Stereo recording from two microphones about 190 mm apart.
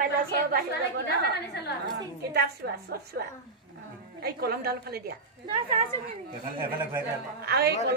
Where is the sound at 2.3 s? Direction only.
55° right (ahead or behind).